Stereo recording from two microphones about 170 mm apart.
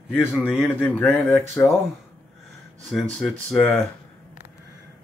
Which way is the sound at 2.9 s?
Centre (ahead or behind).